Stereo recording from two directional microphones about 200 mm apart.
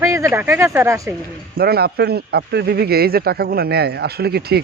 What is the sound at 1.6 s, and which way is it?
Speech, 50° right (ahead or behind).